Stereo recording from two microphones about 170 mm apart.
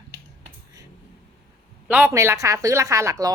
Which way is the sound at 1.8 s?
10° right (ahead or behind).